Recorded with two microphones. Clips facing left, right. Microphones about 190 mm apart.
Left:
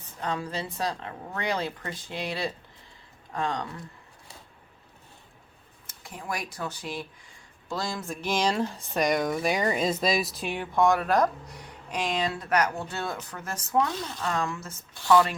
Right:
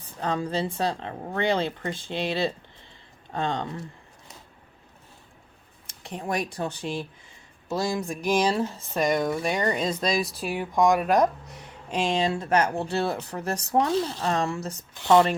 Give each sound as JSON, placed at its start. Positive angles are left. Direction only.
{"t": 0.2, "sound": "speech", "side_deg": -35}
{"t": 5.9, "sound": "a sound", "side_deg": -75}
{"t": 6.1, "sound": "speech", "side_deg": -35}
{"t": 15.0, "sound": "speech", "side_deg": -25}